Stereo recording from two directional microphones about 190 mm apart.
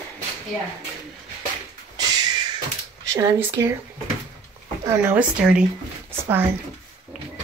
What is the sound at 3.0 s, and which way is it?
Speech, 15° right (ahead or behind).